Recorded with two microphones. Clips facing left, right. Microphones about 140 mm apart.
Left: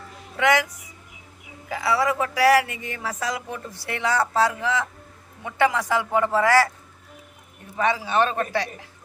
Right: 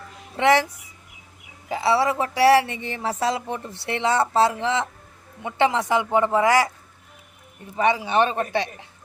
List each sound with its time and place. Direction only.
0.3 s speech: 30° right (ahead or behind)
1.7 s speech: 25° right (ahead or behind)
7.8 s speech: 20° right (ahead or behind)